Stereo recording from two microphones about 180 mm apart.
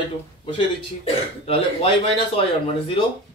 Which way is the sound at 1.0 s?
35° left (ahead or behind).